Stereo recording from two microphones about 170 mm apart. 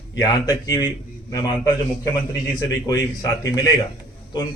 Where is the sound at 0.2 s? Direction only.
20° left (ahead or behind).